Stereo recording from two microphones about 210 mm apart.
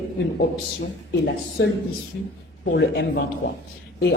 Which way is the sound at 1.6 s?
60° left (ahead or behind).